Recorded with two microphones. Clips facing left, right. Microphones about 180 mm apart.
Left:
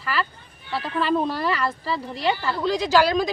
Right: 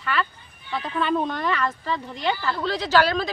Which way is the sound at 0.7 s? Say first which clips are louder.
Left 1 dB; 5° left (ahead or behind).